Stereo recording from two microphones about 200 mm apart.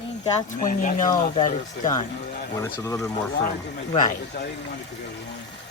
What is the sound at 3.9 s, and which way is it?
Speech, 40° left (ahead or behind).